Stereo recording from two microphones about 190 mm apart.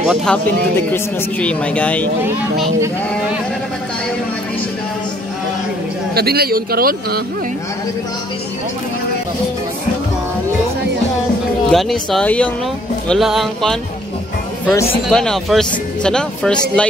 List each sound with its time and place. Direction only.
0.0 s a man's voice: centre (ahead or behind)
6.1 s a man's voice: 55° right (ahead or behind)
11.7 s a man's voice: centre (ahead or behind)
15.0 s a man's voice: 5° left (ahead or behind)